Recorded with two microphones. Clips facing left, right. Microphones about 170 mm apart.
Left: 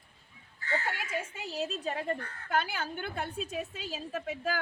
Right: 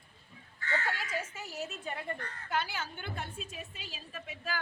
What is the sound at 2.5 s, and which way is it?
Speech, 55° left (ahead or behind).